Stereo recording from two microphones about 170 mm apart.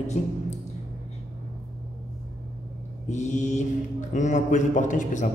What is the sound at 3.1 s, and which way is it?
A man's voice, 45° left (ahead or behind).